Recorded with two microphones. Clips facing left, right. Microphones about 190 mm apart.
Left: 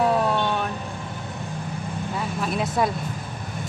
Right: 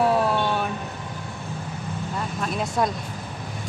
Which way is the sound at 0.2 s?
Centre (ahead or behind).